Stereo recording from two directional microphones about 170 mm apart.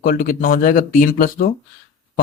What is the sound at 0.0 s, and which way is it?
Speech, 55° left (ahead or behind).